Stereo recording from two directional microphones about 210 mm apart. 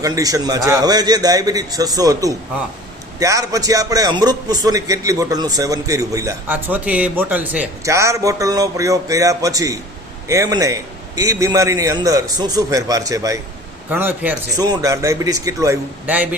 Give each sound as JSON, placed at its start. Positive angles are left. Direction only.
{"t": 0.0, "sound": "a man's voice", "side_deg": -15}